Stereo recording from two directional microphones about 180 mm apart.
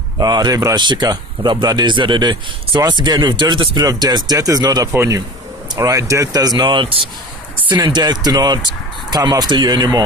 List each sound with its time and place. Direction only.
0.2 s a man's voice: 20° right (ahead or behind)